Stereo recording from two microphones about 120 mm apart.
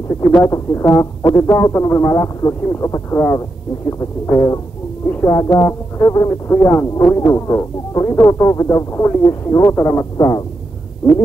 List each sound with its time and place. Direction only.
0.2 s speech: 30° left (ahead or behind)